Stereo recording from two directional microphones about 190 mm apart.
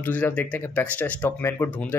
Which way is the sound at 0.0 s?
10° left (ahead or behind).